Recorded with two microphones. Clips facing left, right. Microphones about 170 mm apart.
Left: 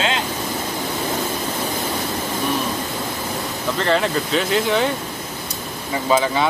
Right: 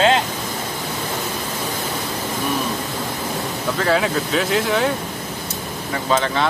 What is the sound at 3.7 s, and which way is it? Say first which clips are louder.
Speech: even; 5° right (ahead or behind).